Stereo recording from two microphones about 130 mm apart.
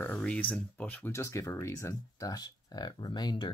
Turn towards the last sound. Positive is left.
turn(degrees=35)  # may be behind; listen again after turning